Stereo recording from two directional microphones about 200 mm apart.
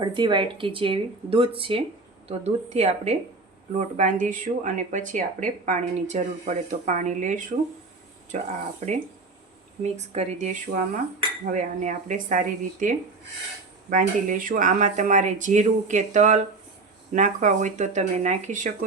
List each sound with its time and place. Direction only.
0.0 s speech: 25° right (ahead or behind); by 18.9 s 40° right (ahead or behind)